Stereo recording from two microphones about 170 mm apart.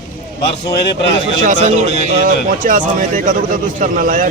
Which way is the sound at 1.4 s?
45° right (ahead or behind).